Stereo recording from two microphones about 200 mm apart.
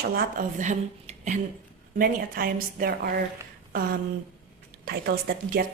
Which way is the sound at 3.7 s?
45° right (ahead or behind).